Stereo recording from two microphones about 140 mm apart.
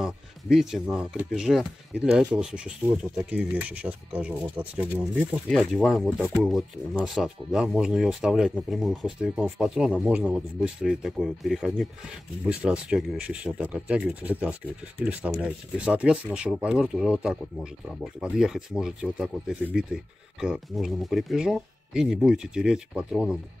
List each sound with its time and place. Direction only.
0.0 s speech: 5° right (ahead or behind)
5.5 s speech: 5° left (ahead or behind)